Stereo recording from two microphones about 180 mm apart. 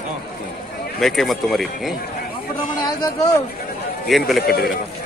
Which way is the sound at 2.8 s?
20° left (ahead or behind).